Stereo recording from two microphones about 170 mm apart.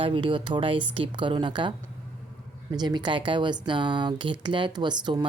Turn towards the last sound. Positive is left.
turn(degrees=-25)  # may be behind; listen again after turning